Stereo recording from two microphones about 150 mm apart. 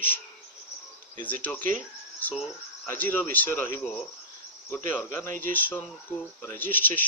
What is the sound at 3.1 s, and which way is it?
Speech, 10° left (ahead or behind).